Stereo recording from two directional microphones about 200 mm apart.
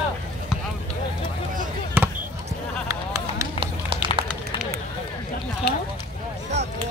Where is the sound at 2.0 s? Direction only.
10° right (ahead or behind).